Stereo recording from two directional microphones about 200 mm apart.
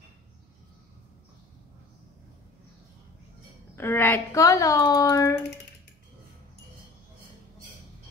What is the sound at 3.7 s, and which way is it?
A woman's voice, 10° left (ahead or behind).